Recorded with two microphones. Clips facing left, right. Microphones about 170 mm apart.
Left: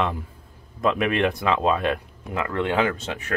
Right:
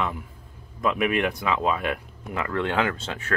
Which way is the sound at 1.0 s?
30° left (ahead or behind).